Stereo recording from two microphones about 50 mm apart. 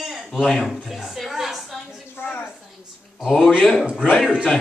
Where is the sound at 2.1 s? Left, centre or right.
Left.